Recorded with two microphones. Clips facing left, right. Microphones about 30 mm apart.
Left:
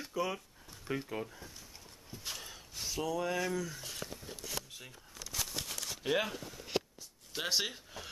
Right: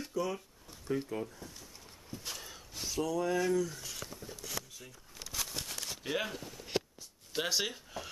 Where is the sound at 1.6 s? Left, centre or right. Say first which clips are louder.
Right 1 dB; centre.